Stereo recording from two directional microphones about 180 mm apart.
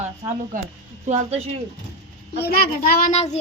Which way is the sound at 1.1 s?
40° right (ahead or behind).